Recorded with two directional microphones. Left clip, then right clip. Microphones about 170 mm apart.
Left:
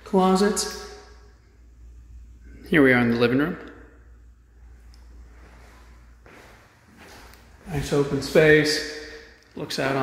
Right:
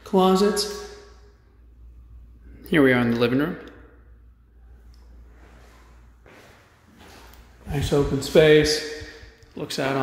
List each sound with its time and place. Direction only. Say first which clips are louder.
0.0 s speech: right 1 dB; 10° right (ahead or behind)
2.6 s speech: left 1 dB; centre (ahead or behind)
7.7 s a man's voice: right 1 dB; 25° right (ahead or behind)